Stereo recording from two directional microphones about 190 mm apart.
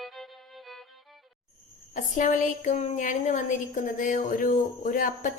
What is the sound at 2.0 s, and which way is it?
A woman's voice, 40° left (ahead or behind).